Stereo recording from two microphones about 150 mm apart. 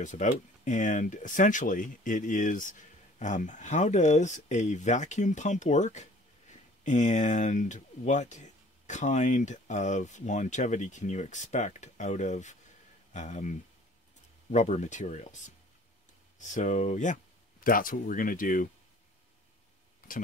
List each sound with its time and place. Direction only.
0.0 s speech: 55° left (ahead or behind)
16.3 s speech: 55° left (ahead or behind)
17.6 s speech: 70° left (ahead or behind)
20.0 s a sound: 70° left (ahead or behind)